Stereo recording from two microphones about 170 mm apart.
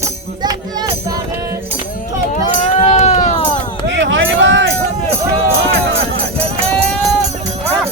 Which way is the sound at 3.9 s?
90° right.